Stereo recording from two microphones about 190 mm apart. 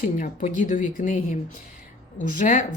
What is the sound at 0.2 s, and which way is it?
Speech, 45° left (ahead or behind).